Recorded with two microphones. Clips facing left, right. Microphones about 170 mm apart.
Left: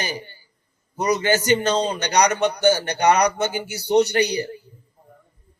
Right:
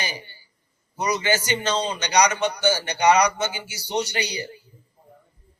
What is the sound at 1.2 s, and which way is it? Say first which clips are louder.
A man's voice: left 5 dB; 55° left (ahead or behind).